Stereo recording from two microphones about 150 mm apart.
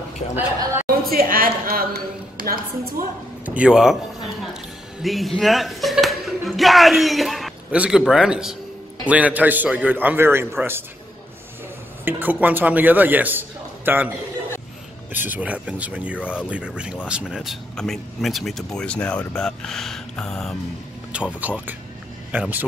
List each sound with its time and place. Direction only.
0.8 s speech: 80° right
3.4 s speech: 5° right (ahead or behind)
5.0 s a man's voice: centre (ahead or behind)
12.0 s a man's voice: 15° right (ahead or behind)
15.1 s a man's voice: 10° right (ahead or behind); by 20.5 s 5° left (ahead or behind)
21.1 s a man's voice: 10° right (ahead or behind)